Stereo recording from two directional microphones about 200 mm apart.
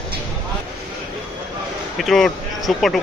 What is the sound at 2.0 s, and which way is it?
Speech, centre (ahead or behind).